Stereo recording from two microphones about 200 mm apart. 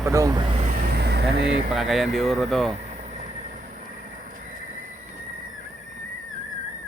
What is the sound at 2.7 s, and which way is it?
Vehicle, 35° right (ahead or behind).